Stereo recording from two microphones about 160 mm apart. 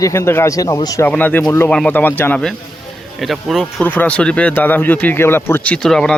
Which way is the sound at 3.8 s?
10° left (ahead or behind).